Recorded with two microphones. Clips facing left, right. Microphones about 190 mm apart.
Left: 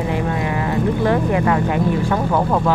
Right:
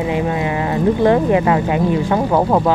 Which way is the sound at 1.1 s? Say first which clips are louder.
Right 3 dB; 20° right (ahead or behind).